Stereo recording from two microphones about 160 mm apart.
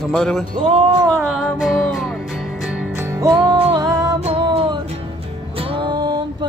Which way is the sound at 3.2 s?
30° right (ahead or behind).